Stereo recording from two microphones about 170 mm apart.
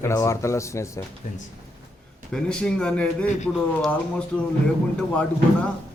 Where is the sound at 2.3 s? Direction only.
5° left (ahead or behind).